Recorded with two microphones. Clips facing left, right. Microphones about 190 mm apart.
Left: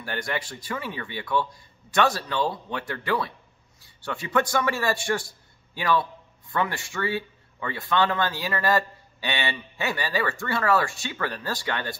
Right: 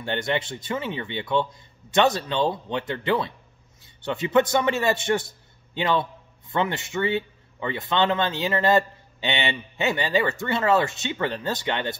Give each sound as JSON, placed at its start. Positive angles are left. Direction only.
{"t": 0.0, "sound": "speech", "side_deg": -25}